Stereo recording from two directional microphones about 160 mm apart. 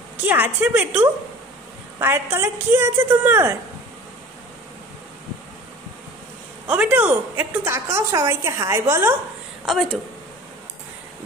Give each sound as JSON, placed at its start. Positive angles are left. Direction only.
{"t": 0.3, "sound": "a woman's voice", "side_deg": -10}
{"t": 6.7, "sound": "a woman's voice", "side_deg": -10}
{"t": 9.7, "sound": "speech", "side_deg": 5}